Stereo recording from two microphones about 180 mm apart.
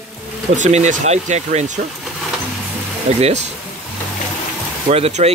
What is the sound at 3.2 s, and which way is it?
Speech, 40° right (ahead or behind).